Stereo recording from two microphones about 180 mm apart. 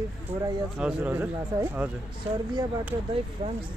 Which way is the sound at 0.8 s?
5° right (ahead or behind).